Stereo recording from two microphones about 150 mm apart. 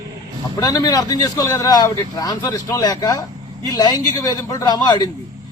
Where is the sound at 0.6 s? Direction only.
25° left (ahead or behind).